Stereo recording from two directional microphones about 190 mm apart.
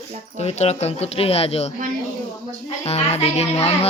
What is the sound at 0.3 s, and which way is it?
A child's voice, 35° left (ahead or behind).